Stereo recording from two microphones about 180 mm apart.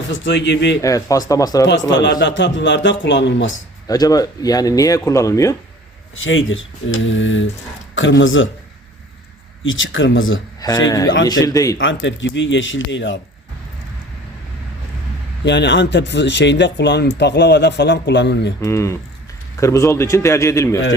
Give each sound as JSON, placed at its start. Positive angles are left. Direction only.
{"t": 0.1, "sound": "speech", "side_deg": 85}
{"t": 0.8, "sound": "a man's voice", "side_deg": 20}
{"t": 1.9, "sound": "speech", "side_deg": 85}
{"t": 3.8, "sound": "speech", "side_deg": 20}
{"t": 6.2, "sound": "speech", "side_deg": 90}
{"t": 9.6, "sound": "speech", "side_deg": 90}
{"t": 10.6, "sound": "speech", "side_deg": 20}
{"t": 11.8, "sound": "speech", "side_deg": 90}
{"t": 15.4, "sound": "speech", "side_deg": 75}
{"t": 18.6, "sound": "a man's voice", "side_deg": 15}